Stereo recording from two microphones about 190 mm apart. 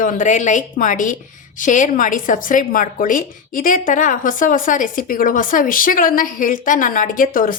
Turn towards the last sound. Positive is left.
turn(degrees=45)  # may be behind; listen again after turning